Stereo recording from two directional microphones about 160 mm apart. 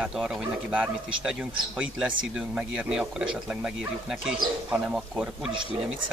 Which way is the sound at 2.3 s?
5° right (ahead or behind).